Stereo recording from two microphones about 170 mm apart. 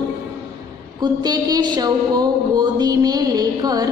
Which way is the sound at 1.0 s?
25° right (ahead or behind).